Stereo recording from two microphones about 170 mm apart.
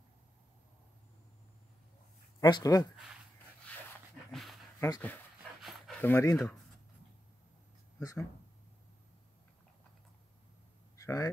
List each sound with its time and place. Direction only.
2.4 s speech: 20° left (ahead or behind)
4.3 s dog: centre (ahead or behind)
4.7 s speech: 20° left (ahead or behind)
5.6 s a sound: centre (ahead or behind)
8.0 s speech: 20° left (ahead or behind)
11.0 s quack: 20° left (ahead or behind)